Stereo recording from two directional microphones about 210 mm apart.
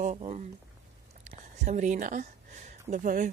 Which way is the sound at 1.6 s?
35° right (ahead or behind).